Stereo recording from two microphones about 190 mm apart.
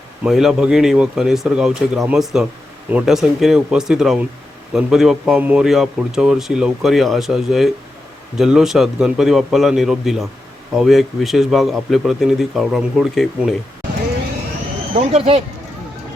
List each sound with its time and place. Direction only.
0.2 s a man's voice: centre (ahead or behind)
14.9 s speech: 35° right (ahead or behind)